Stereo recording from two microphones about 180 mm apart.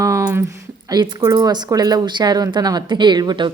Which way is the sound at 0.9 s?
20° right (ahead or behind).